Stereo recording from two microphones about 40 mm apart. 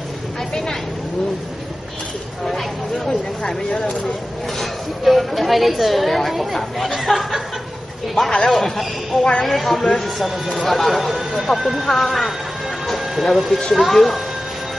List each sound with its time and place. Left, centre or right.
3.7 s speech: left
4.6 s a woman's voice: centre
8.3 s speech: centre
9.2 s speech: left
9.5 s a woman's voice: centre
12.8 s a sound: centre
13.7 s a woman's voice: centre